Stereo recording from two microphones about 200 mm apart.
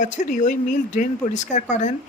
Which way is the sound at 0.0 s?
40° left (ahead or behind).